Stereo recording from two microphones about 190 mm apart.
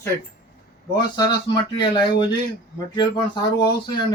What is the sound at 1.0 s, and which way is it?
Speech, 20° left (ahead or behind).